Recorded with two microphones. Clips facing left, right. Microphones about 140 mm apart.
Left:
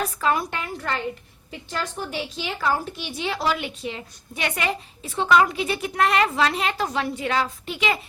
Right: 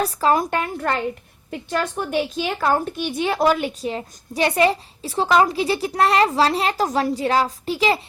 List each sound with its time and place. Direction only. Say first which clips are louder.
0.0 s a woman's voice: right 5 dB; 35° right (ahead or behind)